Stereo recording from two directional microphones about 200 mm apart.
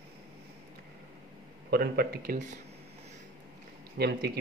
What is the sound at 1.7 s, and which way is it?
Speech, 50° right (ahead or behind).